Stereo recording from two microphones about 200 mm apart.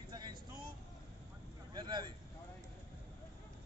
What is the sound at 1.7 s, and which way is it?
Vehicle, 20° right (ahead or behind).